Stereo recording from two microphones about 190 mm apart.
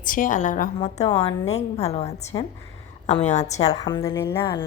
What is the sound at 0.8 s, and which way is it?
A woman's voice, 30° left (ahead or behind).